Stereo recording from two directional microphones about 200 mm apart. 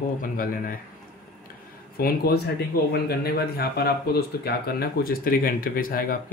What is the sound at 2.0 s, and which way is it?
Speech, 50° left (ahead or behind).